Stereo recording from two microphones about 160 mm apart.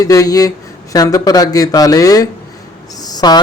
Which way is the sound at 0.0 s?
20° left (ahead or behind).